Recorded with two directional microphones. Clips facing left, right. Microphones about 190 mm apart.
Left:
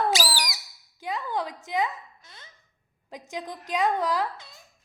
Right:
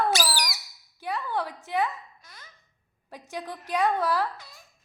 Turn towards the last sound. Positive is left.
turn(degrees=20)  # may be behind; listen again after turning